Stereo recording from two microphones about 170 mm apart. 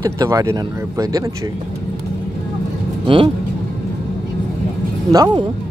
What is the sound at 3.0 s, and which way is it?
Speech, 30° right (ahead or behind).